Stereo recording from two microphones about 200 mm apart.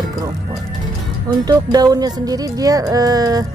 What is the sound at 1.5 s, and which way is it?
Speech, 20° right (ahead or behind).